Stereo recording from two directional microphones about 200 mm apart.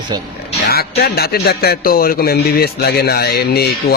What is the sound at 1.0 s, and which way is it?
A man's voice, 50° left (ahead or behind).